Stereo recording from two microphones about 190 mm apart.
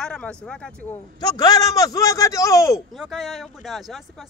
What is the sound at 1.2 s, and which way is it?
A man's voice, 20° left (ahead or behind).